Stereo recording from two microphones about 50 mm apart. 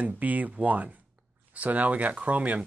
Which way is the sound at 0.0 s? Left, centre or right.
Right.